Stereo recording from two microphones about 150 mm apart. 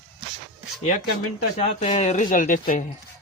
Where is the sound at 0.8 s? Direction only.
50° left (ahead or behind).